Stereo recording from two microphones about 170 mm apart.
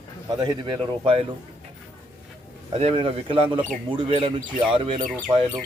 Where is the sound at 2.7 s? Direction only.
35° right (ahead or behind).